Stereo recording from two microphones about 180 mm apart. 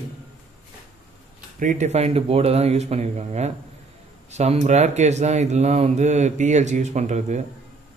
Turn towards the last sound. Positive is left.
turn(degrees=-40)  # may be behind; listen again after turning